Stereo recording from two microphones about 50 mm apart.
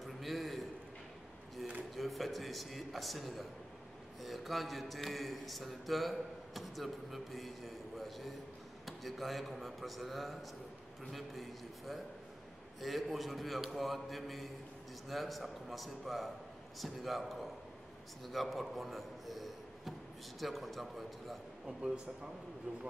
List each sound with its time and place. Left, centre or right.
0.0 s a sound: centre
2.0 s a man's voice: centre
21.6 s speech: centre
22.7 s speech: right